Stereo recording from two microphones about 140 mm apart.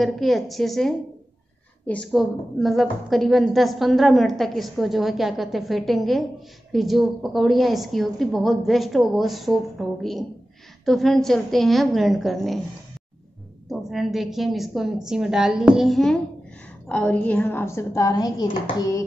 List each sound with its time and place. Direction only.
0.0 s a woman's voice: centre (ahead or behind)
13.7 s a woman's voice: centre (ahead or behind); by 18.5 s 25° left (ahead or behind)
18.8 s a sound: 20° left (ahead or behind)